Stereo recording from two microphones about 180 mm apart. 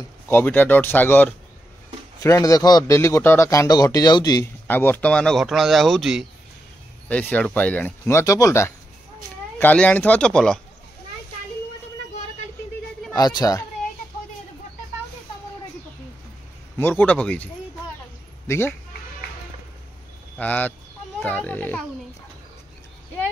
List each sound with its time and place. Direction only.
0.3 s a man's voice: 10° left (ahead or behind)
4.6 s speech: 10° left (ahead or behind)
13.1 s a man's voice: 20° left (ahead or behind)
16.7 s speech: 10° left (ahead or behind)
18.5 s speech: 15° left (ahead or behind)
20.3 s speech: 10° left (ahead or behind)